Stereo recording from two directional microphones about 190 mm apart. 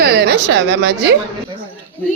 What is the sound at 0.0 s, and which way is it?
A woman's voice, 60° right (ahead or behind).